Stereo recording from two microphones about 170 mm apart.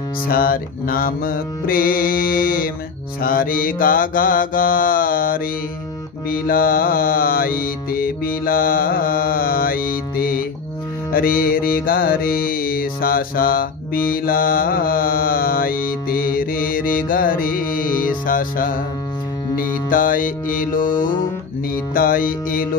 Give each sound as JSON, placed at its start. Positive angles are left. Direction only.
{"t": 0.3, "sound": "music", "side_deg": 60}
{"t": 19.5, "sound": "mantra", "side_deg": 55}
{"t": 21.9, "sound": "music", "side_deg": 55}